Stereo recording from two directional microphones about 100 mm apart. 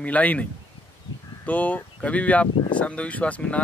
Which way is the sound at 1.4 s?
15° left (ahead or behind).